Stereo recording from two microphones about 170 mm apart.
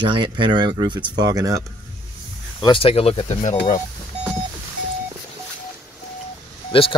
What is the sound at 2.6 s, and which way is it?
Speech, 35° left (ahead or behind).